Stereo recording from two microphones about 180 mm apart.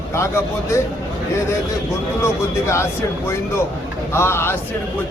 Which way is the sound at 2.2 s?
15° left (ahead or behind).